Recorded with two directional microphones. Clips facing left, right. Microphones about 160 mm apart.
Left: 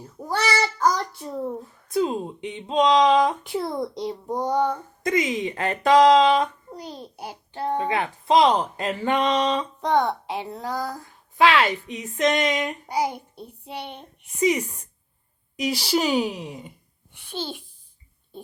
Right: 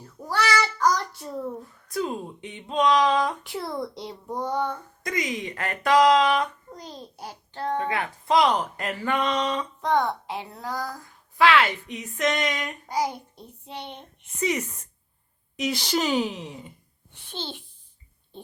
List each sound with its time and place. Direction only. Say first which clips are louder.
0.0 s child singing: left 1 dB; 25° left (ahead or behind)
1.9 s speech: left 5 dB; 25° left (ahead or behind)
6.7 s a child's voice: left 3 dB; 10° left (ahead or behind)
7.9 s a woman's voice: left 3 dB; 25° left (ahead or behind)